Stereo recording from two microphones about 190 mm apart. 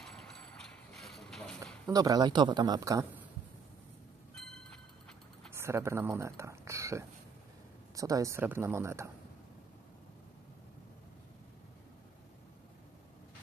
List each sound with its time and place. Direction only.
0.9 s a sound: centre (ahead or behind)
1.9 s speech: 20° right (ahead or behind)
5.5 s speech: 15° right (ahead or behind)